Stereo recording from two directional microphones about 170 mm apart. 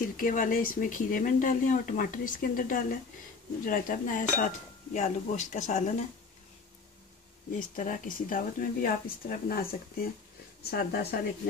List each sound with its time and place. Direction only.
0.0 s speech: 50° left (ahead or behind)
7.5 s speech: 50° left (ahead or behind)
10.7 s a woman's voice: 65° left (ahead or behind)